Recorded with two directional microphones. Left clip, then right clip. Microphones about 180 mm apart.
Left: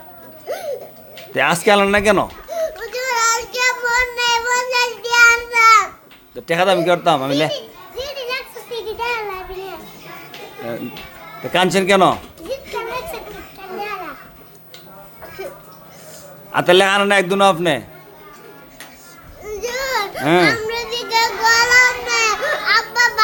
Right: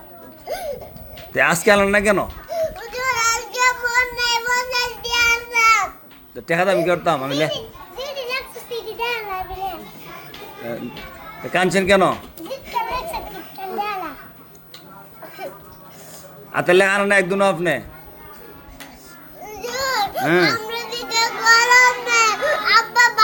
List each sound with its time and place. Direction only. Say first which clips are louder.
0.4 s a sound: left 2 dB; 5° left (ahead or behind)
6.3 s speech: left 3 dB; 20° left (ahead or behind)
6.8 s children playing: left 4 dB; 20° left (ahead or behind)
11.5 s a man's voice: left 2 dB; 20° left (ahead or behind)
16.5 s a man's voice: left 2 dB; 20° left (ahead or behind)
19.6 s babbling: left 1 dB; 15° left (ahead or behind)
20.1 s a sound: left 4 dB; 15° left (ahead or behind)